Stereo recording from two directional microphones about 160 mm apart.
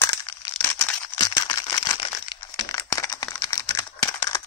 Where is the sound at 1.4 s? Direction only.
25° left (ahead or behind).